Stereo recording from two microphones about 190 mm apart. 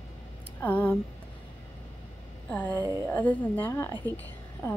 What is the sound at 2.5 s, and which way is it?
Speech, 10° left (ahead or behind).